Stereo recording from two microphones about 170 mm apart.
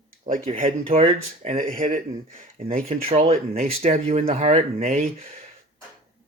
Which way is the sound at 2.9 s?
35° right (ahead or behind).